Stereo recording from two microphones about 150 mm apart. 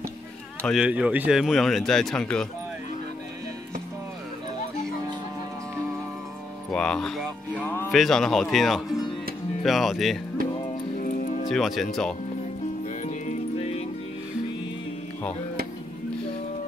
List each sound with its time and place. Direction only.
0.6 s speech: 5° left (ahead or behind)
0.8 s speech: 10° right (ahead or behind)
6.7 s speech: 5° left (ahead or behind)
7.6 s speech: 15° left (ahead or behind)
7.9 s speech: centre (ahead or behind)
11.0 s music: 60° left (ahead or behind)
11.4 s speech: centre (ahead or behind)